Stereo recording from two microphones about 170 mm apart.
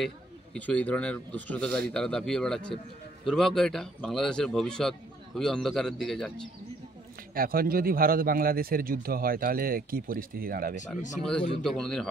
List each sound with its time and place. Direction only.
0.0 s speech: 5° left (ahead or behind)
7.3 s a man's voice: 60° right (ahead or behind)
11.1 s speech: 5° left (ahead or behind)